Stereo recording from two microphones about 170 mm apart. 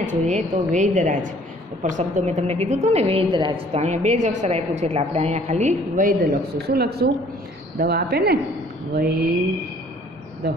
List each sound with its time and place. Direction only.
0.0 s a woman's voice: 45° right (ahead or behind)
6.7 s a woman's voice: 65° right (ahead or behind)